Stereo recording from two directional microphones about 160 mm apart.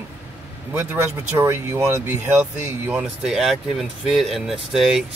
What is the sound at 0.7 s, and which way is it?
Speech, 15° right (ahead or behind).